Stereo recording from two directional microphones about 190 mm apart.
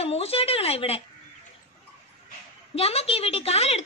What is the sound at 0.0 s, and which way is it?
A woman's voice, 30° left (ahead or behind).